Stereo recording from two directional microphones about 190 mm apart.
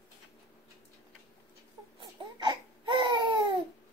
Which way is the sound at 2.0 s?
25° right (ahead or behind).